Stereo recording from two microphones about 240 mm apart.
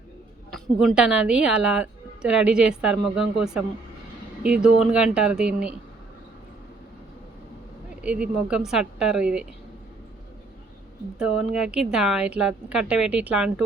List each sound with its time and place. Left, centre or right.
0.5 s a woman's voice: centre
8.0 s a woman's voice: centre
11.2 s a woman's voice: centre